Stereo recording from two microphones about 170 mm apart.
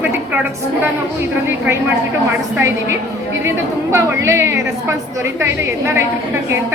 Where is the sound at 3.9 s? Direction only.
15° right (ahead or behind).